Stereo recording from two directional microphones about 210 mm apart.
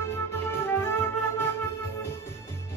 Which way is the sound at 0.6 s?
10° left (ahead or behind).